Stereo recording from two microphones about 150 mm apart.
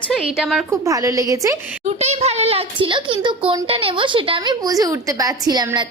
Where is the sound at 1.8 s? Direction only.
45° right (ahead or behind).